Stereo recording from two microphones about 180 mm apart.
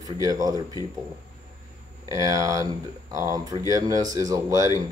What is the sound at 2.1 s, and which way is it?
Speech, 20° right (ahead or behind).